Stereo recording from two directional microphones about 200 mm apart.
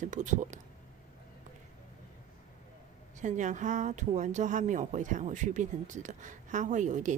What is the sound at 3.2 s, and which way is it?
Speech, 40° right (ahead or behind).